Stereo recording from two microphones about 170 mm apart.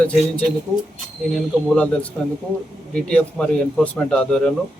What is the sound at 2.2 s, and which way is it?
A man's voice, 5° left (ahead or behind).